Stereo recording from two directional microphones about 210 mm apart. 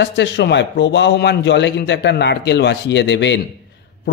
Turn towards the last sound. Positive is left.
turn(degrees=55)  # may be behind; listen again after turning